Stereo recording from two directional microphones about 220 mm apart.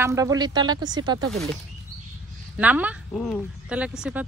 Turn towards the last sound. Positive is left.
turn(degrees=-5)  # may be behind; listen again after turning